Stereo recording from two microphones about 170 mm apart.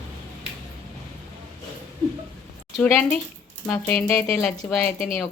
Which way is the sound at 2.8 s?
5° left (ahead or behind).